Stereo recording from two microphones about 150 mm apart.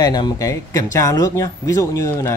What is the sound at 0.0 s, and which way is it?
A man's voice, 25° left (ahead or behind).